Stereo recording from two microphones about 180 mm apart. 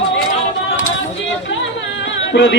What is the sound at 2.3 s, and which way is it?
Speech, 70° left (ahead or behind).